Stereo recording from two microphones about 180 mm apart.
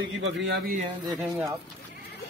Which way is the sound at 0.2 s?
70° right (ahead or behind).